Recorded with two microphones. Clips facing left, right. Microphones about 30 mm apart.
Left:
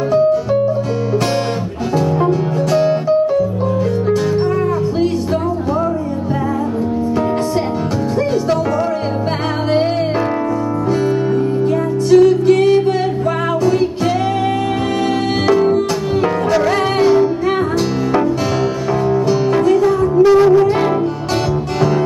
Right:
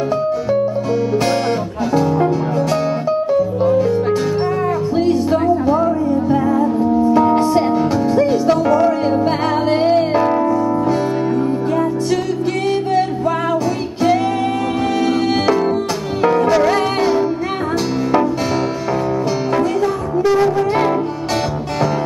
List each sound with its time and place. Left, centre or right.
2.7 s music: centre
8.2 s music: centre
12.1 s music: centre
15.4 s music: centre
19.5 s music: centre